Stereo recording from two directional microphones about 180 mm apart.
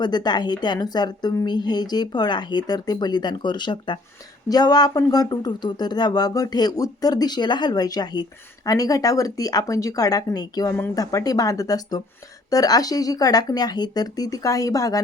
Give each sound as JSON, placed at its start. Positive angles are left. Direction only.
{"t": 0.0, "sound": "speech", "side_deg": 25}